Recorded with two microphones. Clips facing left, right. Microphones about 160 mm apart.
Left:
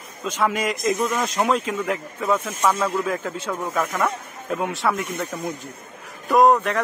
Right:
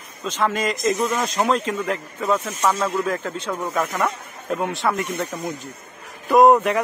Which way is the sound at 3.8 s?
5° right (ahead or behind).